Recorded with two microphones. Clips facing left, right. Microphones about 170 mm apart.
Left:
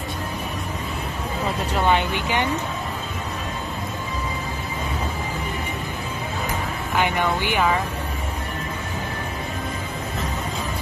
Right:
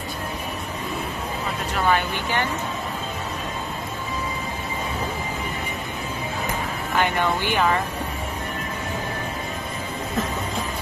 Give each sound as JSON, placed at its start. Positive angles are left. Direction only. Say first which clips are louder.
{"t": 1.8, "sound": "speech", "louder": "left 1 dB", "side_deg": 20}
{"t": 7.0, "sound": "speech", "louder": "even", "side_deg": 15}